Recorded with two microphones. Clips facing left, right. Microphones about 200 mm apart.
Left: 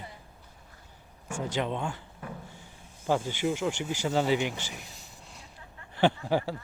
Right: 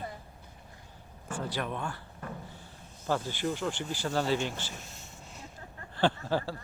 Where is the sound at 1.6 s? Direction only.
20° left (ahead or behind).